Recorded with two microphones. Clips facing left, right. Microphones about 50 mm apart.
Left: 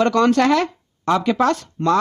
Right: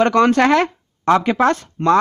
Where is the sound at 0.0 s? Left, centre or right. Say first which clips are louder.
Right 2 dB; right.